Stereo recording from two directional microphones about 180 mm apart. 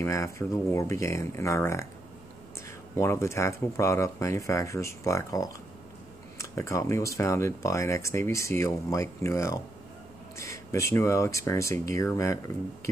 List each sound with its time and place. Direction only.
0.0 s speech: 15° left (ahead or behind)
3.0 s speech: 15° left (ahead or behind)